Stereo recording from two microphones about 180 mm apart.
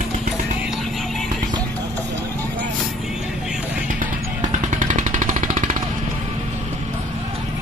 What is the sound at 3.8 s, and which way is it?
Music, 45° right (ahead or behind).